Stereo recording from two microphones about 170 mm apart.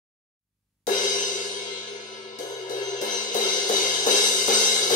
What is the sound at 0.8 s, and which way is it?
Music, 50° left (ahead or behind).